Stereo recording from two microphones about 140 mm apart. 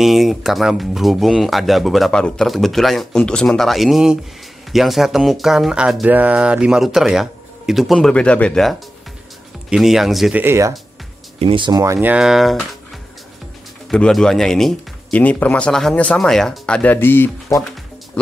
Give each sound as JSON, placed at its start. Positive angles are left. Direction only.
{"t": 0.0, "sound": "speech", "side_deg": 0}
{"t": 10.4, "sound": "speech", "side_deg": -20}
{"t": 11.3, "sound": "speech", "side_deg": -40}
{"t": 11.8, "sound": "speech", "side_deg": -15}
{"t": 13.8, "sound": "speech", "side_deg": 5}